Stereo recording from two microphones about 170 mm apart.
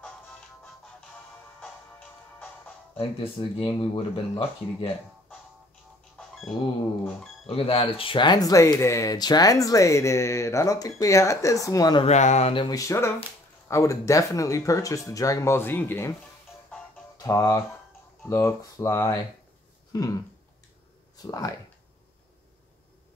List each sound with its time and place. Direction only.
3.0 s speech: 35° left (ahead or behind)
6.1 s a sound: centre (ahead or behind)
7.4 s speech: 35° left (ahead or behind)
12.1 s speech: 45° left (ahead or behind)
12.6 s speech: 20° left (ahead or behind)
17.2 s speech: 20° left (ahead or behind)
19.9 s a sound: 20° left (ahead or behind)
21.2 s speech: 20° left (ahead or behind)